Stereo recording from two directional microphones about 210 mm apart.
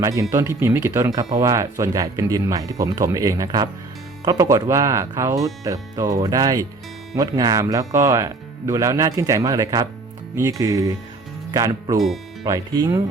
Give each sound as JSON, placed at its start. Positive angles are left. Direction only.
{"t": 0.0, "sound": "speech", "side_deg": -15}
{"t": 11.9, "sound": "speech", "side_deg": 0}
{"t": 12.5, "sound": "speech", "side_deg": -15}